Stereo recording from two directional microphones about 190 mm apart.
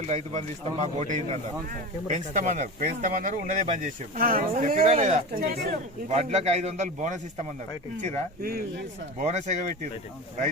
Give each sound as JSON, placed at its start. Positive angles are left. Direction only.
{"t": 0.1, "sound": "speech", "side_deg": -40}
{"t": 6.1, "sound": "speech", "side_deg": -35}
{"t": 8.4, "sound": "speech", "side_deg": -55}
{"t": 9.2, "sound": "speech", "side_deg": -35}